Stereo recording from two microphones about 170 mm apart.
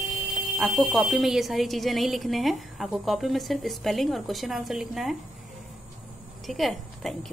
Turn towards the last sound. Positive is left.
turn(degrees=0)  # may be behind; listen again after turning